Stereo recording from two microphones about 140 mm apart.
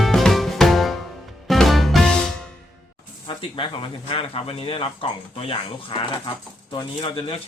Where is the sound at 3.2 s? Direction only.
35° left (ahead or behind).